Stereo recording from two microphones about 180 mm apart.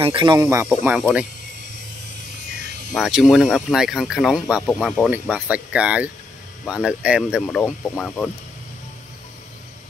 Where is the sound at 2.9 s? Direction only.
Centre (ahead or behind).